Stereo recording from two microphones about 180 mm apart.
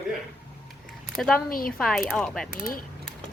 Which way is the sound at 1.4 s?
55° left (ahead or behind).